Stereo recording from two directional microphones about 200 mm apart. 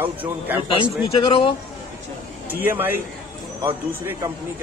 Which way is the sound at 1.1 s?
30° left (ahead or behind).